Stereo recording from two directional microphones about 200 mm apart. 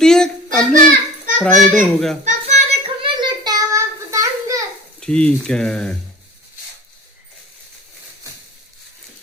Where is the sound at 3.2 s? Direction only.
20° right (ahead or behind).